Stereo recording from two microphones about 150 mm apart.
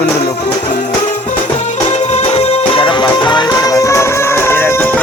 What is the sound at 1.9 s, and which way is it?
Music, 45° left (ahead or behind).